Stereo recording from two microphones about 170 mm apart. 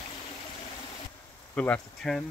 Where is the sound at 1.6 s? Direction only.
5° left (ahead or behind).